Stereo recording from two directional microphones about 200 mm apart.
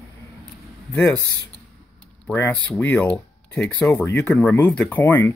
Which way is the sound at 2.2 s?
10° left (ahead or behind).